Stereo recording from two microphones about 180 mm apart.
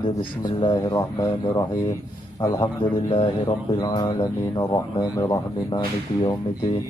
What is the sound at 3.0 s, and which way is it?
Speech, 30° left (ahead or behind).